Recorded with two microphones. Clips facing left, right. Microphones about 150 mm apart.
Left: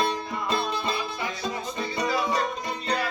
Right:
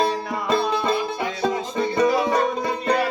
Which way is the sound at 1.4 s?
55° right (ahead or behind).